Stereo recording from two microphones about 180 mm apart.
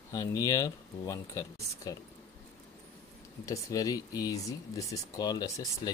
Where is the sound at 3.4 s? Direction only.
20° left (ahead or behind).